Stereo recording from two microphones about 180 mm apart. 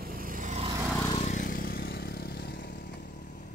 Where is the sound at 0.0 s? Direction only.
50° right (ahead or behind).